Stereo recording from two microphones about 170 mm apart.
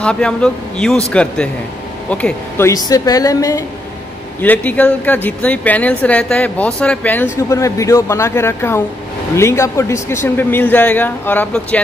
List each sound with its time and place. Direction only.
0.0 s a woman's voice: 5° left (ahead or behind)